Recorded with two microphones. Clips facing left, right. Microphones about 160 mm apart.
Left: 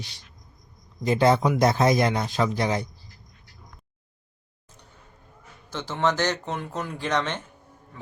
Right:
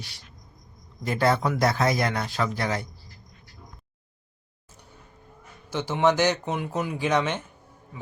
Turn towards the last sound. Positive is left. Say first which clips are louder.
# right 2 dB
turn(degrees=-10)  # may be behind; listen again after turning